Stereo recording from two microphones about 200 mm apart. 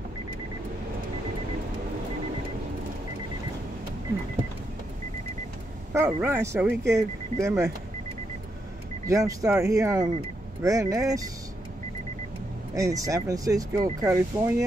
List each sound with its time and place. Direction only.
5.9 s speech: 10° right (ahead or behind)
9.0 s speech: 15° right (ahead or behind)
12.7 s speech: 15° right (ahead or behind)